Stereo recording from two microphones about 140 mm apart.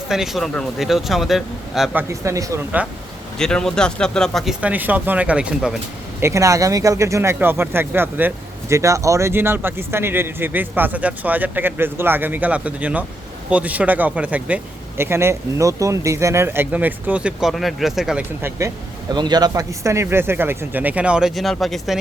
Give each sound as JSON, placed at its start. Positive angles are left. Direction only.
{"t": 0.1, "sound": "speech", "side_deg": 0}
{"t": 2.0, "sound": "speech", "side_deg": -20}
{"t": 3.3, "sound": "speech", "side_deg": 5}
{"t": 4.6, "sound": "speech", "side_deg": -10}
{"t": 6.1, "sound": "speech", "side_deg": -20}
{"t": 19.1, "sound": "speech", "side_deg": -30}